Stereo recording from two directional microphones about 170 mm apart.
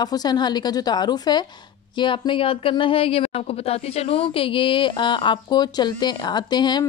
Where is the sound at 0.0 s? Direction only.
25° left (ahead or behind).